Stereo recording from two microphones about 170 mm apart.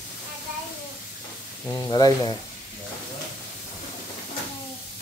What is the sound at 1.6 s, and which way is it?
Speech, 20° left (ahead or behind).